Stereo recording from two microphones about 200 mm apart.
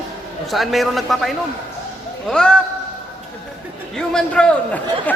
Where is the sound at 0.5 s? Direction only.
Centre (ahead or behind).